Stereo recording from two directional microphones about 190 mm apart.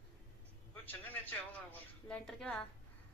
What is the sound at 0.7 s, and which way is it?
A man's voice, 10° left (ahead or behind).